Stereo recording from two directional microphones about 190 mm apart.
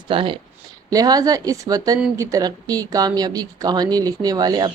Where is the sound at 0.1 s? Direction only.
25° right (ahead or behind).